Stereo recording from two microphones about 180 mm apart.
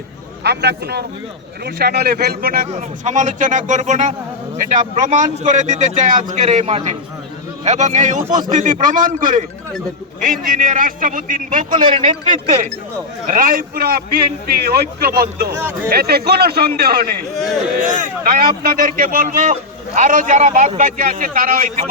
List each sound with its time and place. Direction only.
0.4 s a man's voice: 65° right (ahead or behind); by 9.4 s 45° right (ahead or behind)
10.6 s speech: 50° right (ahead or behind)
11.8 s a man's voice: 30° right (ahead or behind)
13.2 s a man's voice: 45° right (ahead or behind)
15.5 s speech: 10° right (ahead or behind)
15.9 s a man's voice: 60° right (ahead or behind)
17.3 s a man's voice: centre (ahead or behind)
17.8 s speech: 45° right (ahead or behind)